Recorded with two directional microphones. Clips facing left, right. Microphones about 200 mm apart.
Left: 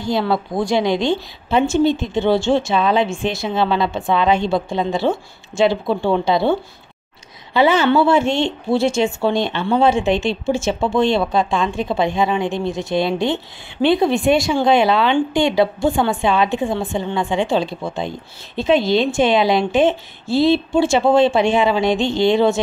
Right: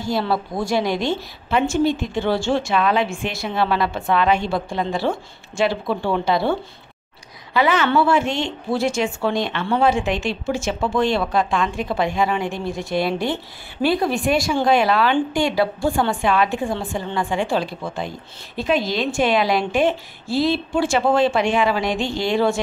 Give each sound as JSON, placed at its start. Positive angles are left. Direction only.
{"t": 0.5, "sound": "speech", "side_deg": 15}
{"t": 0.8, "sound": "a woman's voice", "side_deg": -5}
{"t": 1.5, "sound": "a woman's voice", "side_deg": 25}
{"t": 7.5, "sound": "a woman's voice", "side_deg": 30}